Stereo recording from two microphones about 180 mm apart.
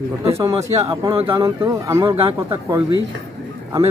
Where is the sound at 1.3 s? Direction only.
15° right (ahead or behind).